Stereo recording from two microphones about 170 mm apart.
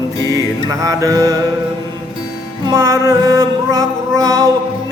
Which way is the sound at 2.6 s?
20° right (ahead or behind).